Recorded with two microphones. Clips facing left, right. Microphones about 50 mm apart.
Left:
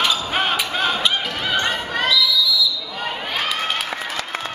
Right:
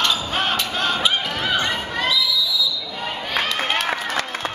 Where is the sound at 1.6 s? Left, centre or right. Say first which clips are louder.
Left 1 dB; left.